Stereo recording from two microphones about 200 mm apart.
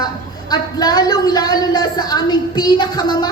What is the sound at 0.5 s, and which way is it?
A woman's voice, 20° left (ahead or behind).